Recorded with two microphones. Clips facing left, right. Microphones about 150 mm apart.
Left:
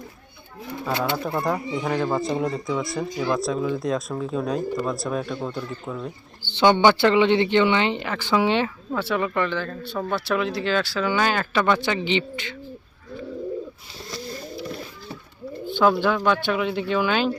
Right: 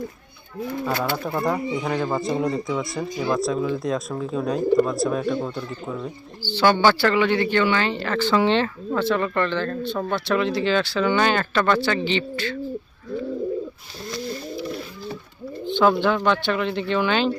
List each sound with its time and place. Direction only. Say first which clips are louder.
1.1 s speech: right 1 dB; centre (ahead or behind)
6.5 s speech: left 1 dB; 20° left (ahead or behind)
15.6 s speech: right 1 dB; 5° left (ahead or behind)